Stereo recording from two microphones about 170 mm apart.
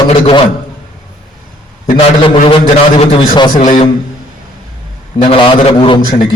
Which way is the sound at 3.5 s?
45° left (ahead or behind).